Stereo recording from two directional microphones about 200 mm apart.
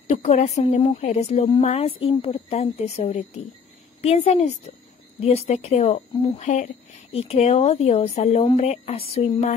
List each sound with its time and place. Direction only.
0.1 s speech: 35° left (ahead or behind)